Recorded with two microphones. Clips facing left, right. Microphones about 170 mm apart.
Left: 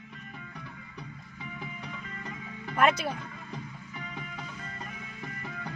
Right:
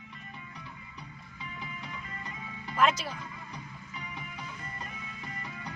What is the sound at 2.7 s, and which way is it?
Speech, 60° left (ahead or behind).